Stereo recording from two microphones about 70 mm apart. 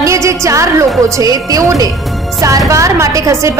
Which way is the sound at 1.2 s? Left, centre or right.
Right.